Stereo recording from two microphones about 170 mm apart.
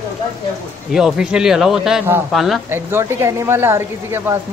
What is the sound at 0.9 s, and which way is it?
Speech, 5° right (ahead or behind).